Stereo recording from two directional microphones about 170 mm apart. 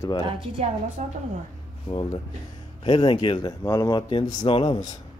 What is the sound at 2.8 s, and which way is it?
Speech, 30° left (ahead or behind).